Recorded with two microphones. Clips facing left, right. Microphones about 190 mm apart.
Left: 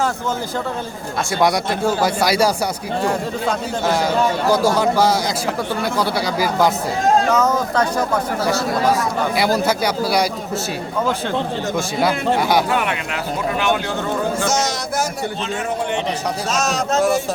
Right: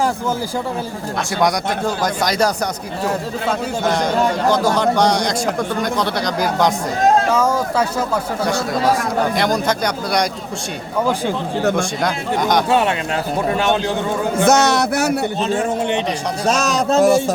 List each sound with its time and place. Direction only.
2.0 s speech: 10° left (ahead or behind)
4.4 s speech: 10° left (ahead or behind)
7.3 s speech: 10° right (ahead or behind)
9.3 s speech: 5° left (ahead or behind)
11.8 s speech: 5° left (ahead or behind)
14.4 s a man's voice: 65° right (ahead or behind)
16.6 s a man's voice: 35° right (ahead or behind)